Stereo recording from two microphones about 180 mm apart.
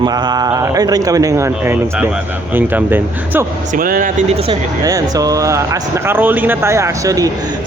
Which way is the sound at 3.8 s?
50° right (ahead or behind).